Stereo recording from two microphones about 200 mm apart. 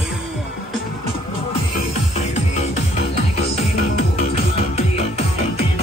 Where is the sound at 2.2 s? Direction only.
35° left (ahead or behind).